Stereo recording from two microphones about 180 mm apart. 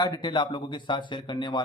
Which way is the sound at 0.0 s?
25° left (ahead or behind).